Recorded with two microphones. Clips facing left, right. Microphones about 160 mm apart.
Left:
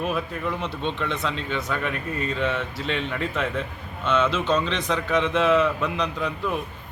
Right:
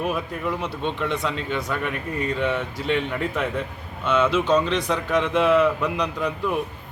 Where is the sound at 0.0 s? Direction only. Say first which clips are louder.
Right 1 dB; 10° right (ahead or behind).